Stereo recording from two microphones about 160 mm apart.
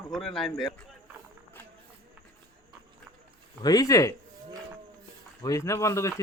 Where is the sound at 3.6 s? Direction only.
25° left (ahead or behind).